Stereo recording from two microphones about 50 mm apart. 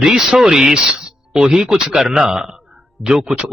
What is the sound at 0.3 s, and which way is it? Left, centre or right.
Speech, centre.